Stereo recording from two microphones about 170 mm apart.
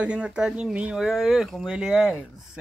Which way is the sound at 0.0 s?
5° right (ahead or behind).